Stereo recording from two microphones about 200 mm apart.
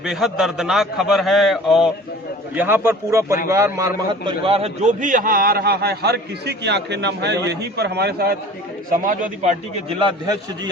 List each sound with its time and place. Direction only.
0.0 s a man's voice: centre (ahead or behind); by 8.4 s 50° right (ahead or behind)
8.9 s a man's voice: 40° right (ahead or behind)